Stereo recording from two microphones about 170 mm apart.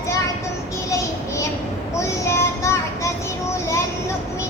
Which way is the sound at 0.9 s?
20° left (ahead or behind).